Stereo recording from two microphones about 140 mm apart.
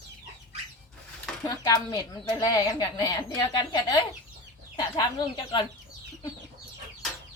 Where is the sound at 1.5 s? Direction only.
25° left (ahead or behind).